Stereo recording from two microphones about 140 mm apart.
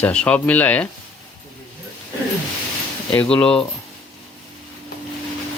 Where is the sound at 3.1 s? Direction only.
10° left (ahead or behind).